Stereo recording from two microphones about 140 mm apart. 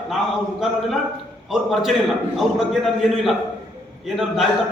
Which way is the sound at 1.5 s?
Centre (ahead or behind).